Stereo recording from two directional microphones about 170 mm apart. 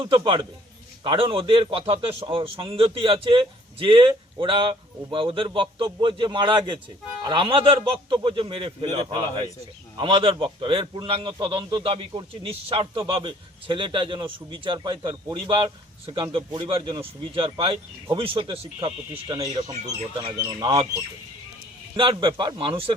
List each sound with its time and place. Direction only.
0.0 s a man's voice: 30° right (ahead or behind)
21.9 s a man's voice: 30° right (ahead or behind)